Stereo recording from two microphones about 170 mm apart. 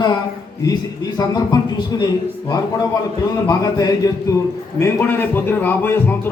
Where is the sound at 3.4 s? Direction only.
20° left (ahead or behind).